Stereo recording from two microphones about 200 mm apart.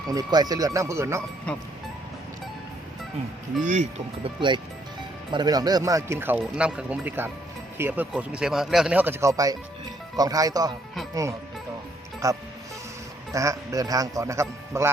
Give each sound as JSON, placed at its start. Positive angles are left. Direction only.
{"t": 0.1, "sound": "speech", "side_deg": -20}
{"t": 3.6, "sound": "speech", "side_deg": -40}
{"t": 4.4, "sound": "speech", "side_deg": -25}